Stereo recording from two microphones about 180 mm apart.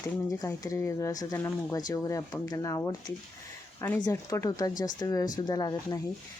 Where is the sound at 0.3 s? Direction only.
20° left (ahead or behind).